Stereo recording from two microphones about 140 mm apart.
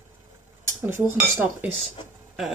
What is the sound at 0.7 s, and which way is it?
Speech, 20° right (ahead or behind).